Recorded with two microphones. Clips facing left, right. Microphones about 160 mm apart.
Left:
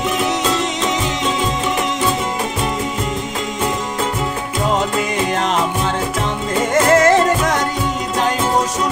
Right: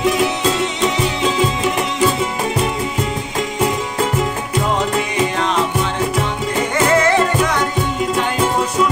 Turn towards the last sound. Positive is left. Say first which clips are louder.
# left 2 dB
turn(degrees=45)  # may be behind; listen again after turning